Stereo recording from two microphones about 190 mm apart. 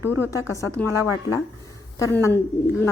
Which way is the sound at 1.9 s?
15° left (ahead or behind).